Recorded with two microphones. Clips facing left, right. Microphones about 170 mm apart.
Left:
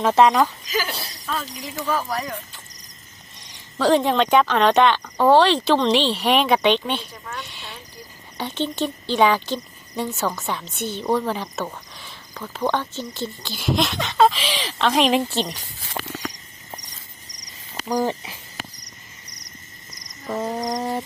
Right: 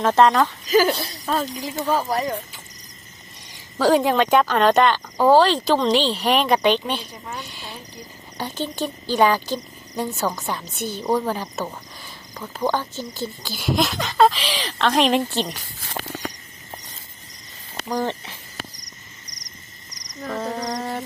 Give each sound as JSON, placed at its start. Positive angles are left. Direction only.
{"t": 0.0, "sound": "speech", "side_deg": 5}
{"t": 0.7, "sound": "speech", "side_deg": -45}
{"t": 1.6, "sound": "speech", "side_deg": -30}
{"t": 3.8, "sound": "speech", "side_deg": -5}
{"t": 7.4, "sound": "a sound", "side_deg": 0}
{"t": 8.4, "sound": "speech", "side_deg": 0}
{"t": 17.8, "sound": "a sound", "side_deg": 10}
{"t": 19.3, "sound": "cricket", "side_deg": 60}
{"t": 20.3, "sound": "a sound", "side_deg": 20}